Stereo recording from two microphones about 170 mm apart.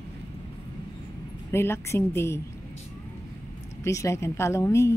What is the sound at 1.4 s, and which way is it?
Speech, 15° left (ahead or behind).